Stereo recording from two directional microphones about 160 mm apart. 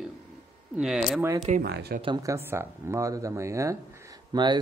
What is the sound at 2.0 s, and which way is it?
Speech, 25° right (ahead or behind).